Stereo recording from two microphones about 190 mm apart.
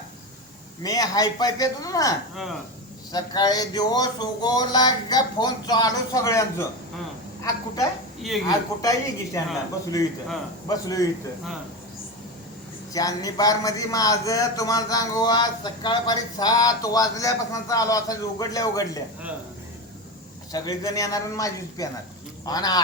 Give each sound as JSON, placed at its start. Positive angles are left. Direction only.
{"t": 0.8, "sound": "a man's voice", "side_deg": 20}
{"t": 2.3, "sound": "speech", "side_deg": 0}
{"t": 3.1, "sound": "a man's voice", "side_deg": 20}
{"t": 8.4, "sound": "a man's voice", "side_deg": 20}
{"t": 12.9, "sound": "a man's voice", "side_deg": 20}
{"t": 20.5, "sound": "a man's voice", "side_deg": 20}